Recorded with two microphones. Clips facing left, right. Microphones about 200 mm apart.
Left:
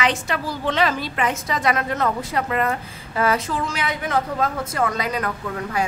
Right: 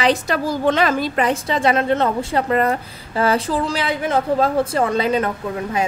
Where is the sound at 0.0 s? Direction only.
35° right (ahead or behind).